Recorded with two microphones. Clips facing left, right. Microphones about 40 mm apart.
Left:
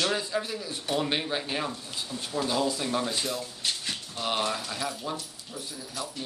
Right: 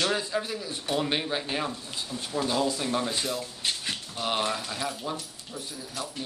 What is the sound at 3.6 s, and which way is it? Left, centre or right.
Dog, centre.